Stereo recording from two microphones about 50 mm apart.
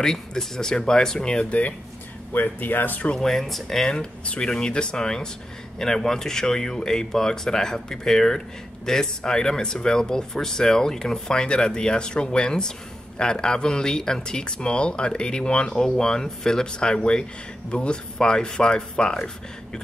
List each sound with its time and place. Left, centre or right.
0.0 s speech: centre
2.3 s speech: left
3.2 s speech: centre
4.0 s speech: centre